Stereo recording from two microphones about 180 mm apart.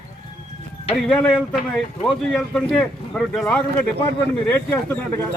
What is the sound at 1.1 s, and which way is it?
A man's voice, 5° left (ahead or behind).